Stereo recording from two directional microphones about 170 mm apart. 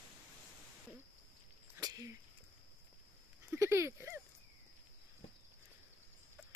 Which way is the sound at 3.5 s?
15° right (ahead or behind).